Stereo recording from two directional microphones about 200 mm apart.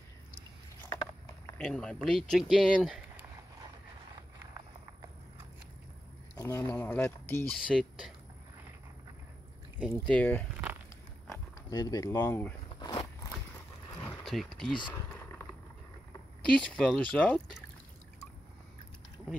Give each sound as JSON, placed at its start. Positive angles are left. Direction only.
{"t": 0.8, "sound": "boat", "side_deg": 15}
{"t": 1.6, "sound": "speech", "side_deg": 5}
{"t": 6.3, "sound": "speech", "side_deg": 15}
{"t": 7.5, "sound": "speech", "side_deg": 0}
{"t": 9.8, "sound": "speech", "side_deg": 5}
{"t": 11.7, "sound": "speech", "side_deg": 20}
{"t": 12.7, "sound": "walk", "side_deg": 20}
{"t": 14.2, "sound": "speech", "side_deg": 0}
{"t": 14.7, "sound": "speech", "side_deg": 25}
{"t": 16.5, "sound": "speech", "side_deg": 5}